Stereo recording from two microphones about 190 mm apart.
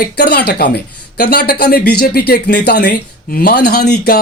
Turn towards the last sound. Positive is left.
turn(degrees=55)  # may be behind; listen again after turning